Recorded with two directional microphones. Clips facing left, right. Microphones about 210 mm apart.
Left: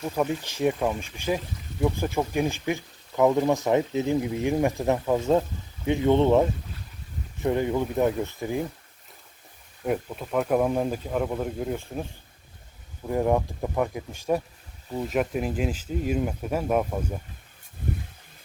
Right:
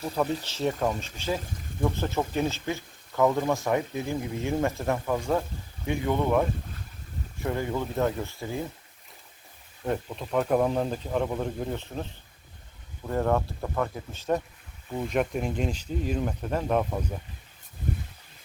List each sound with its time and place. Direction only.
0.4 s speech: 15° left (ahead or behind)
7.4 s speech: 20° left (ahead or behind)
9.8 s speech: 10° left (ahead or behind)
13.1 s speech: 15° left (ahead or behind)